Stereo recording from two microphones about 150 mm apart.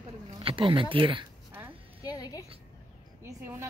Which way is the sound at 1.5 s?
15° right (ahead or behind).